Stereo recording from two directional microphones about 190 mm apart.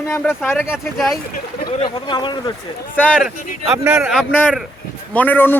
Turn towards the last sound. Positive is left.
turn(degrees=10)  # may be behind; listen again after turning